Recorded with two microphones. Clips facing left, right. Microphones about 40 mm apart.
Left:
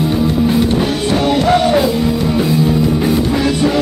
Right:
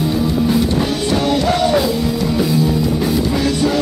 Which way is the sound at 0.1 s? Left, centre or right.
Left.